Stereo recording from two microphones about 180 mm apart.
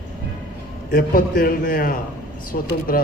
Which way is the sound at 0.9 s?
50° left (ahead or behind).